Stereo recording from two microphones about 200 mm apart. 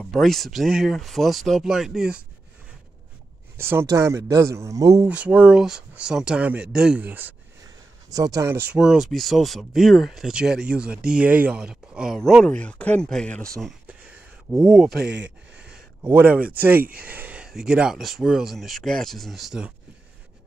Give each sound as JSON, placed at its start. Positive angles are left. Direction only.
{"t": 0.0, "sound": "speech", "side_deg": 0}
{"t": 3.5, "sound": "speech", "side_deg": -10}
{"t": 5.0, "sound": "speech", "side_deg": -5}
{"t": 8.7, "sound": "speech", "side_deg": 0}
{"t": 15.0, "sound": "speech", "side_deg": -60}
{"t": 16.0, "sound": "speech", "side_deg": -10}